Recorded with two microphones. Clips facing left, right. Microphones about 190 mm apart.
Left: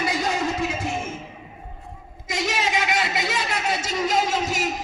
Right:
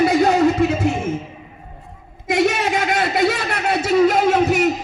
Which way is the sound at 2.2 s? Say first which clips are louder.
Right 8 dB; 60° right (ahead or behind).